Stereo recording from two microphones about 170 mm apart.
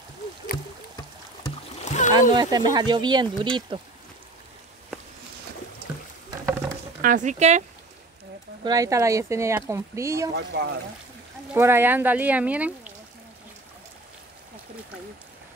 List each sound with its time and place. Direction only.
1.9 s rowboat: 45° left (ahead or behind)
2.3 s speech: 25° right (ahead or behind)
7.0 s speech: 50° right (ahead or behind)
8.6 s speech: 20° right (ahead or behind)
10.3 s speech: 85° right
11.5 s speech: 15° right (ahead or behind)